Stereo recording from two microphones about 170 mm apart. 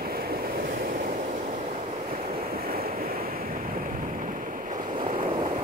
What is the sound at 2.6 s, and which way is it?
Waves, 60° right (ahead or behind).